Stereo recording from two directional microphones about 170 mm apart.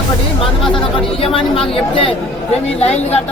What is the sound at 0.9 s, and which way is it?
Speech, 30° left (ahead or behind).